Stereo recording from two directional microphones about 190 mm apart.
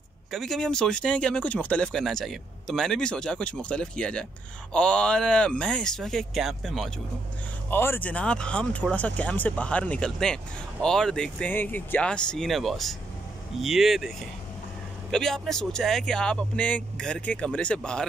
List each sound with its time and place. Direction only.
0.3 s speech: centre (ahead or behind)
7.7 s speech: 10° left (ahead or behind)